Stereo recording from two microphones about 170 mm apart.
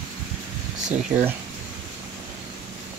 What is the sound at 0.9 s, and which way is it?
Speech, 10° right (ahead or behind).